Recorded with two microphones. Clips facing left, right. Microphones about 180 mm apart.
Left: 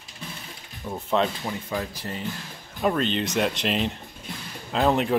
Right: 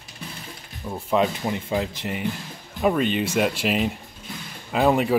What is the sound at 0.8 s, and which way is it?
Speech, 5° right (ahead or behind).